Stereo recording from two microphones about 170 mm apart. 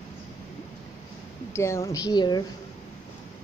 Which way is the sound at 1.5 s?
15° left (ahead or behind).